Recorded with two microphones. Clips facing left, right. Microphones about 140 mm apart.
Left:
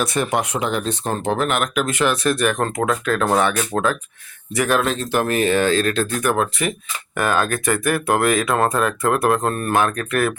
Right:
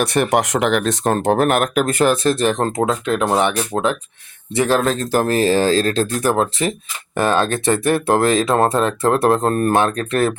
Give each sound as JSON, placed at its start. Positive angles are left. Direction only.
{"t": 0.0, "sound": "speech", "side_deg": -65}
{"t": 2.4, "sound": "speech", "side_deg": -30}
{"t": 4.8, "sound": "speech", "side_deg": -40}